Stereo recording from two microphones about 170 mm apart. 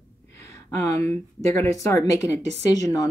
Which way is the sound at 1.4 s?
15° left (ahead or behind).